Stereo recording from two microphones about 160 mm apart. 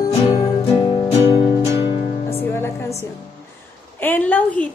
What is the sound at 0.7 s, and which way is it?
Music, 40° left (ahead or behind).